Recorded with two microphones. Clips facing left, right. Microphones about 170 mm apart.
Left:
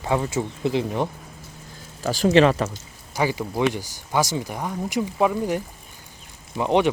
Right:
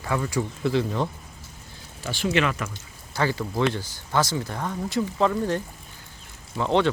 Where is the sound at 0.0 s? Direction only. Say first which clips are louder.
Left 3 dB; 25° left (ahead or behind).